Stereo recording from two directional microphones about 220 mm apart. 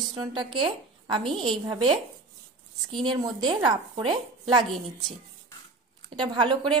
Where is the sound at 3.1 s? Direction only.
20° right (ahead or behind).